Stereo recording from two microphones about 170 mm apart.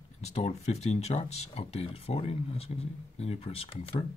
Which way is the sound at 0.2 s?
40° left (ahead or behind).